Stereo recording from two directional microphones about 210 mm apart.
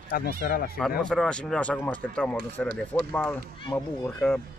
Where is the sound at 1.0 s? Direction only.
5° left (ahead or behind).